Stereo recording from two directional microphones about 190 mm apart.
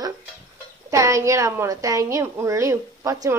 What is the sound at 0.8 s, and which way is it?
A woman's voice, 15° right (ahead or behind).